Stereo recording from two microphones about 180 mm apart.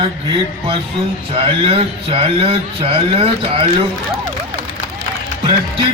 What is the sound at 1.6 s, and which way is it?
Speech, 30° right (ahead or behind).